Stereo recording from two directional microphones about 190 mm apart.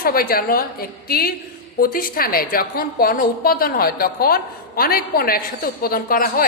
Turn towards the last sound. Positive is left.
turn(degrees=50)  # may be behind; listen again after turning